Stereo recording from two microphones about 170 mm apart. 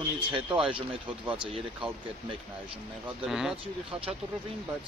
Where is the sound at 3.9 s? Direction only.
35° right (ahead or behind).